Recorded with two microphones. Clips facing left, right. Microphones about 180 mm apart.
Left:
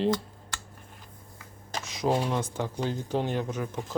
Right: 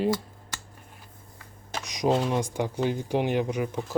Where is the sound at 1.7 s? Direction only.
15° right (ahead or behind).